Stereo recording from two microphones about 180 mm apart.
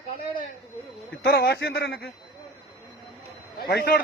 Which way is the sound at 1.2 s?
60° left (ahead or behind).